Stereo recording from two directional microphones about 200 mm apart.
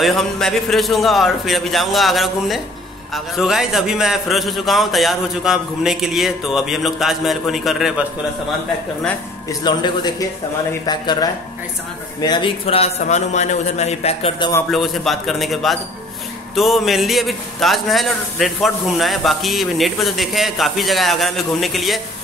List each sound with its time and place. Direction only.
0.0 s a man's voice: centre (ahead or behind)
9.5 s a man's voice: 20° left (ahead or behind)
14.7 s a man's voice: centre (ahead or behind)